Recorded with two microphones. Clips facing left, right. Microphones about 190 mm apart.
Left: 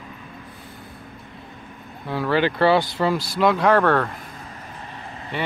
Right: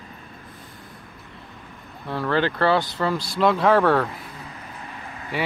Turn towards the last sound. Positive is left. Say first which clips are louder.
# right 1 dB
turn(degrees=-10)  # may be behind; listen again after turning